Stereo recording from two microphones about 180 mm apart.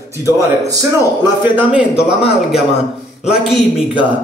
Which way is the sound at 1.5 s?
5° right (ahead or behind).